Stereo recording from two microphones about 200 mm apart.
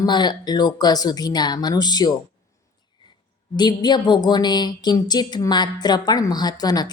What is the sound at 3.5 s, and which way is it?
Speech, 20° left (ahead or behind).